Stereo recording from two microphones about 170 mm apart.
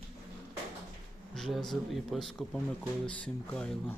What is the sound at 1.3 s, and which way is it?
Speech, centre (ahead or behind).